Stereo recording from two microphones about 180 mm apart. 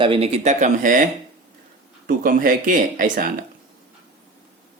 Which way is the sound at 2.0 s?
50° right (ahead or behind).